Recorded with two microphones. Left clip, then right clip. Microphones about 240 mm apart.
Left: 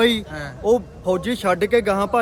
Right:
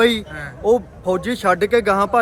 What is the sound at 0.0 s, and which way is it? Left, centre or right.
Speech, centre.